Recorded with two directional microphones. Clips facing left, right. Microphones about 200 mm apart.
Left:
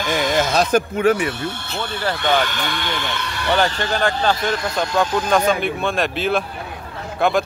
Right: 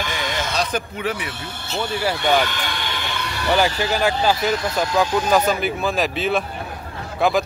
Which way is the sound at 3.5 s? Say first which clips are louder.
Even; 5° right (ahead or behind).